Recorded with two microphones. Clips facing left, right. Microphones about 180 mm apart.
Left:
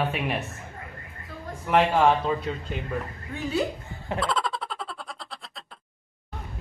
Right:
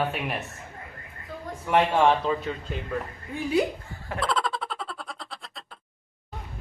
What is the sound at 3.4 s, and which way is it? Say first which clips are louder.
Speech: right 3 dB; 10° right (ahead or behind).